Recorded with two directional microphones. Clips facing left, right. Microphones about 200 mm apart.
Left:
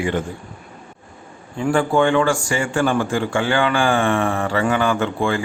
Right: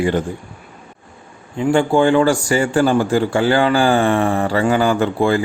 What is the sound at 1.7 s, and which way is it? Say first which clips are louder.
A man's voice: right 3 dB; 30° right (ahead or behind).